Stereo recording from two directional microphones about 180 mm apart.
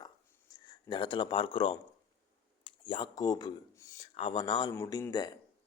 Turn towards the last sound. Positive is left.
turn(degrees=20)  # may be behind; listen again after turning